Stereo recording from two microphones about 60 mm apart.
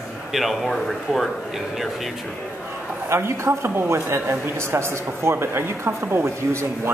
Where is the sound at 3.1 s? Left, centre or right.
Right.